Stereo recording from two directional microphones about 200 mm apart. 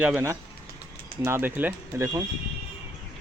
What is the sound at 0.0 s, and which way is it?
Speech, 10° right (ahead or behind).